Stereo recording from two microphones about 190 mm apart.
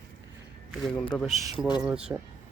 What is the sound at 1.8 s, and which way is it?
Speech, 5° right (ahead or behind).